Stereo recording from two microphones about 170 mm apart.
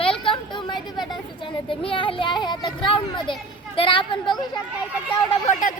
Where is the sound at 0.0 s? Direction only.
30° left (ahead or behind).